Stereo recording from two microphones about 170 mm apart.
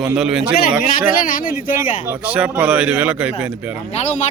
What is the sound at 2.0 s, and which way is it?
Speech, 10° right (ahead or behind).